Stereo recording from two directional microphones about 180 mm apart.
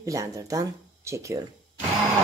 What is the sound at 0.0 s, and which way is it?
Speech, 15° right (ahead or behind).